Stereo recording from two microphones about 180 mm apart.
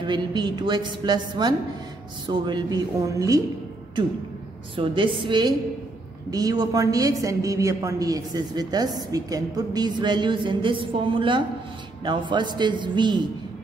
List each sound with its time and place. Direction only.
0.0 s a woman's voice: 25° right (ahead or behind)
4.7 s a woman's voice: 30° right (ahead or behind)